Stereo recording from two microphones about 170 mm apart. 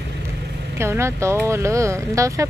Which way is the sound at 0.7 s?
15° right (ahead or behind).